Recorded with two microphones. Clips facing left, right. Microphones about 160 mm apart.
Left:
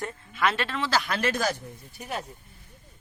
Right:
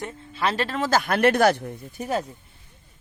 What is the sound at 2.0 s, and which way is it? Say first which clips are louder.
Speech: right 8 dB; 40° right (ahead or behind).